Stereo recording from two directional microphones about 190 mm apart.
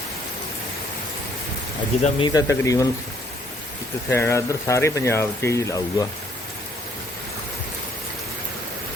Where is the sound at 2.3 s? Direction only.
20° left (ahead or behind).